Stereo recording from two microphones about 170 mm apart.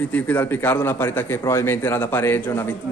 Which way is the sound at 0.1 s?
10° left (ahead or behind).